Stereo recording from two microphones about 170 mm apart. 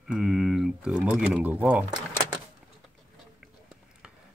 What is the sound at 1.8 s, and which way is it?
Drawer open or close, 25° right (ahead or behind).